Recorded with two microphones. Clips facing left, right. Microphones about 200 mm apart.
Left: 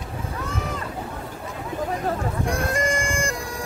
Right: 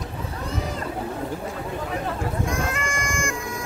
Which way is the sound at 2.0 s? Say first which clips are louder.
Left 2 dB; 35° left (ahead or behind).